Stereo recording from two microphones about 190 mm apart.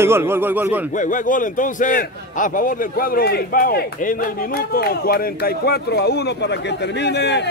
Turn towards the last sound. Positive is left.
turn(degrees=65)  # may be behind; listen again after turning